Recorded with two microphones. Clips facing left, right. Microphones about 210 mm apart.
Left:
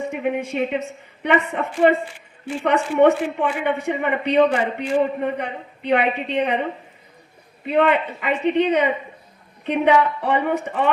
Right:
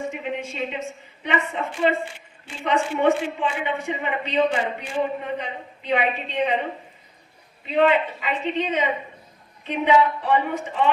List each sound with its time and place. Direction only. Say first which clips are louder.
0.1 s a man's voice: left 6 dB; 60° left (ahead or behind)
7.6 s a man's voice: left 1 dB; 60° left (ahead or behind)